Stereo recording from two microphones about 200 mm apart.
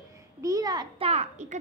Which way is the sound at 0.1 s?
15° right (ahead or behind).